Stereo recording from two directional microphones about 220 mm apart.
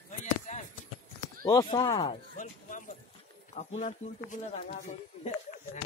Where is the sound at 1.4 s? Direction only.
15° left (ahead or behind).